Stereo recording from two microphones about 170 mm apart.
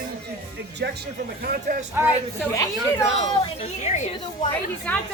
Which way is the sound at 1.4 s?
50° right (ahead or behind).